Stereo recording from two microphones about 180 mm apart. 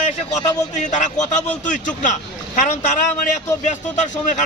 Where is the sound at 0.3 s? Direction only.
40° left (ahead or behind).